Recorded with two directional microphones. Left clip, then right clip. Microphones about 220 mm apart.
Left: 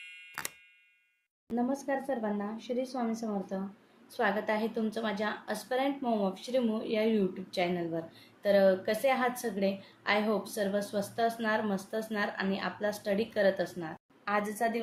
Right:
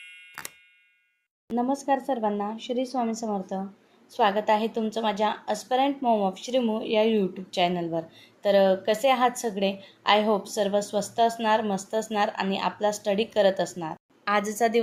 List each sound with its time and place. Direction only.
0.0 s clock: centre (ahead or behind)
1.5 s speech: centre (ahead or behind)
1.9 s a woman's voice: 30° right (ahead or behind)
14.3 s a woman's voice: 45° right (ahead or behind)